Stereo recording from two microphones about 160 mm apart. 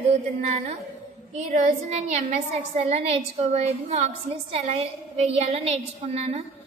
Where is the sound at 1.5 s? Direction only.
50° right (ahead or behind).